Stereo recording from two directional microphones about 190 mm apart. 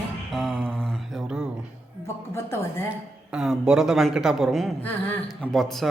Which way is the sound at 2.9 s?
5° right (ahead or behind).